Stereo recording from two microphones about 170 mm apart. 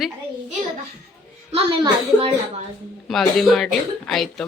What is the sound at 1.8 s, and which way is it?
Speech, 30° right (ahead or behind).